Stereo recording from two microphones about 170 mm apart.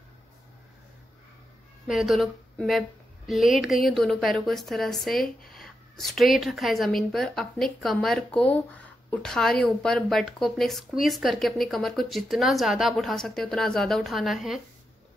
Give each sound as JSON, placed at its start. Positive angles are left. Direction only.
{"t": 1.9, "sound": "a woman's voice", "side_deg": 0}
{"t": 5.2, "sound": "speech", "side_deg": 60}
{"t": 5.6, "sound": "a woman's voice", "side_deg": 0}